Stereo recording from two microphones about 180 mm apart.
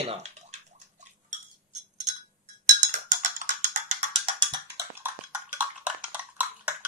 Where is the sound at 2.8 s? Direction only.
45° right (ahead or behind).